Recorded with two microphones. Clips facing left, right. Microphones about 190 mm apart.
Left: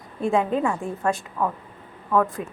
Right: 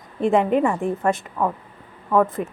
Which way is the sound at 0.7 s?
15° right (ahead or behind).